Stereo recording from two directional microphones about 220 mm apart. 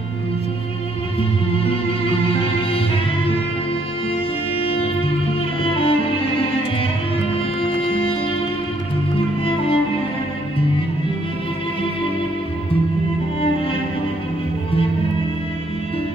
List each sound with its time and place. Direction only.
1.5 s music: 25° left (ahead or behind)
4.6 s music: 25° left (ahead or behind)
5.6 s violin: 25° left (ahead or behind)
7.6 s music: 25° left (ahead or behind)
9.4 s music: 25° left (ahead or behind)